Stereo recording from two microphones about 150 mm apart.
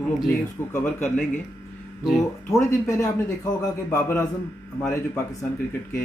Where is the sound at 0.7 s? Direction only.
15° left (ahead or behind).